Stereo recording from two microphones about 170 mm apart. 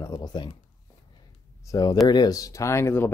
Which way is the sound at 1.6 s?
20° left (ahead or behind).